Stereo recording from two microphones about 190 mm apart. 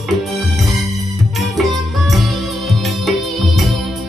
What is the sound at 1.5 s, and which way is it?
Music, centre (ahead or behind).